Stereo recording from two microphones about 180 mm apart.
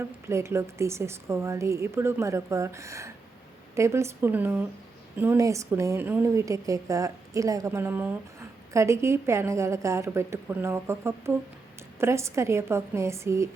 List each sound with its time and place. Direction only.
0.0 s a woman's voice: 15° right (ahead or behind)